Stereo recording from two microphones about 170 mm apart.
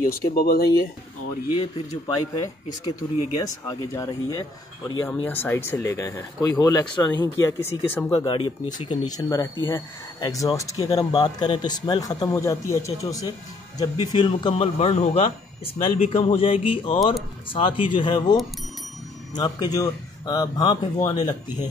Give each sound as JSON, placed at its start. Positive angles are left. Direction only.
{"t": 0.1, "sound": "speech", "side_deg": 65}
{"t": 2.8, "sound": "a man's voice", "side_deg": 25}
{"t": 5.0, "sound": "a man's voice", "side_deg": 10}
{"t": 7.6, "sound": "speech", "side_deg": 10}
{"t": 8.2, "sound": "a man's voice", "side_deg": 25}